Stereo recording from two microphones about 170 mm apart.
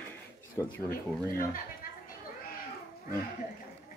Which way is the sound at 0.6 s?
15° left (ahead or behind).